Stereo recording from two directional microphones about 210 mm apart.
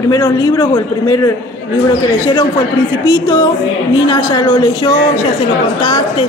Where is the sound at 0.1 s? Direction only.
20° left (ahead or behind).